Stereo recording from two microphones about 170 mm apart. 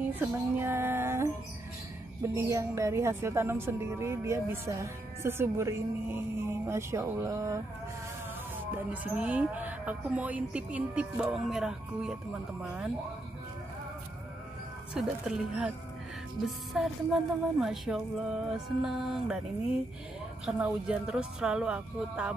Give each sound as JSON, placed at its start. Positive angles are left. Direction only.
{"t": 0.1, "sound": "speech", "side_deg": -10}
{"t": 2.3, "sound": "speech", "side_deg": -15}
{"t": 8.7, "sound": "speech", "side_deg": -10}
{"t": 15.0, "sound": "speech", "side_deg": -5}
{"t": 20.4, "sound": "speech", "side_deg": -5}